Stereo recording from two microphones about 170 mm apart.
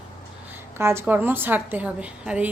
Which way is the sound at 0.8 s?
15° right (ahead or behind).